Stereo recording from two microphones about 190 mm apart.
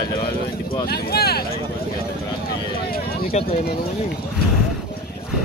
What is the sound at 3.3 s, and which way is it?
Speech, 35° left (ahead or behind).